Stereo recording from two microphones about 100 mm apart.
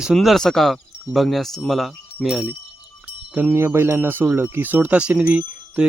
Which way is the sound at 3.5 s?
25° right (ahead or behind).